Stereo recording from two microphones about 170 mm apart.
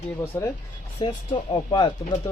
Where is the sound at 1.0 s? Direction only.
30° left (ahead or behind).